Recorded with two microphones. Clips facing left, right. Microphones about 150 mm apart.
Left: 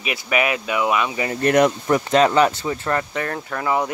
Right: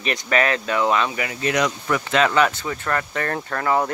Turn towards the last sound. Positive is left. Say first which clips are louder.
# right 1 dB
turn(degrees=10)  # may be behind; listen again after turning